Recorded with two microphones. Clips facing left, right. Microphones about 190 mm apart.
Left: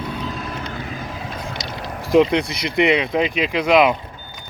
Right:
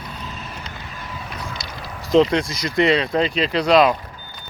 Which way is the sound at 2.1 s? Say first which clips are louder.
Left 1 dB; 15° left (ahead or behind).